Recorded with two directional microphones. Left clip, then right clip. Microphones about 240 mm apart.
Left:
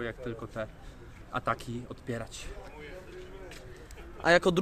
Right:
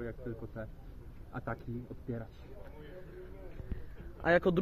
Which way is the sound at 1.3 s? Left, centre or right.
Left.